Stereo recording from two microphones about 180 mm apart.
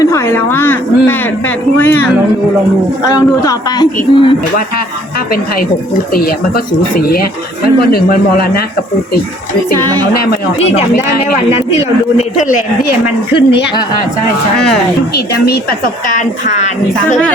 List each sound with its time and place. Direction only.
0.0 s a woman's voice: 15° left (ahead or behind)
3.1 s a man's voice: 20° left (ahead or behind)
6.1 s speech: 55° left (ahead or behind)
10.6 s speech: 35° left (ahead or behind)
13.3 s a man's voice: 30° left (ahead or behind)
15.1 s speech: 60° left (ahead or behind)
16.0 s a woman's voice: 45° left (ahead or behind)